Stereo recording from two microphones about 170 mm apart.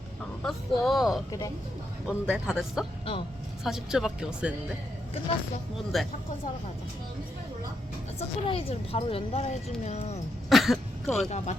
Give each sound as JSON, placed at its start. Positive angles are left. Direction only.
{"t": 0.4, "sound": "speech", "side_deg": 0}
{"t": 5.9, "sound": "speech", "side_deg": 0}
{"t": 8.4, "sound": "speech", "side_deg": 35}
{"t": 10.5, "sound": "a sound", "side_deg": 0}
{"t": 11.3, "sound": "speech", "side_deg": 45}